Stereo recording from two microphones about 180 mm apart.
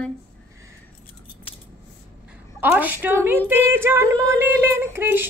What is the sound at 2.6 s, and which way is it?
A woman's voice, 10° right (ahead or behind).